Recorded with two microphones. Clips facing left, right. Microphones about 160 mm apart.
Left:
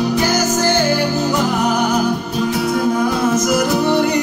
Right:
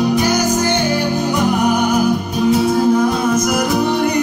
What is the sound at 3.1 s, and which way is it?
Music, 15° right (ahead or behind).